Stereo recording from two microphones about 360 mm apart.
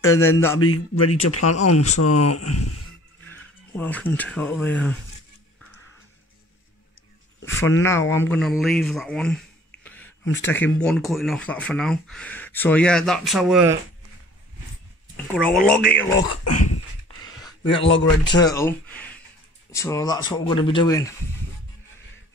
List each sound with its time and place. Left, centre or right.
0.0 s speech: centre
0.6 s speech: left
3.3 s speech: centre
8.1 s speech: centre
15.3 s speech: centre
17.4 s a sound: centre
17.8 s speech: left
18.3 s speech: centre